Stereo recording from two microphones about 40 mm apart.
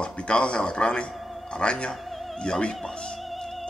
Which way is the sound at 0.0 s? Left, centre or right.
Left.